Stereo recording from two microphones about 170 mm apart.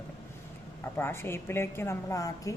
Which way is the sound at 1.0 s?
15° left (ahead or behind).